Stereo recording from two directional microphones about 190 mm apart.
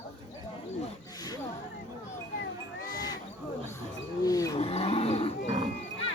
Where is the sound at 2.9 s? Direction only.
20° left (ahead or behind).